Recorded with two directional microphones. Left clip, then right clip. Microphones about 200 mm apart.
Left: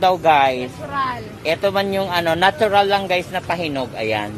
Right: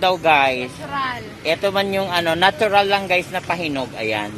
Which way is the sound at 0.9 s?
30° left (ahead or behind).